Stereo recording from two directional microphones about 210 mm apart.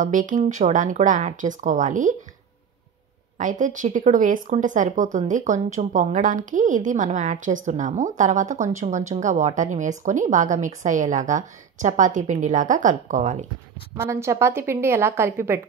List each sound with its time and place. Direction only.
0.0 s speech: 40° right (ahead or behind)
3.3 s speech: 35° right (ahead or behind)
13.9 s a woman's voice: 15° right (ahead or behind)